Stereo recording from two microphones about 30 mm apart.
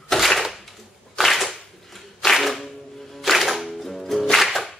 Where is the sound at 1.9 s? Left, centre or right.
Centre.